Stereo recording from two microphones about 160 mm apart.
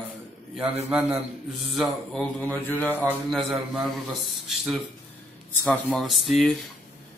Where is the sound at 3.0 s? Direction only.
5° right (ahead or behind).